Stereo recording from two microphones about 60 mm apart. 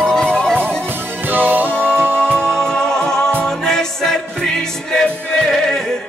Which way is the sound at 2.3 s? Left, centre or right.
Centre.